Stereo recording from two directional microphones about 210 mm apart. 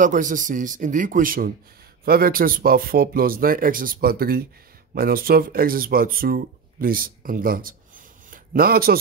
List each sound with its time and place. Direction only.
0.0 s speech: 40° right (ahead or behind)